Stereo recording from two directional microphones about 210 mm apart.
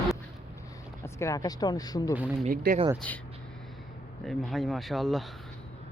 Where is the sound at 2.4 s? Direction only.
40° right (ahead or behind).